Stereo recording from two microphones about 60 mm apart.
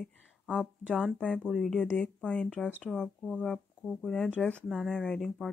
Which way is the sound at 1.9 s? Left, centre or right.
Centre.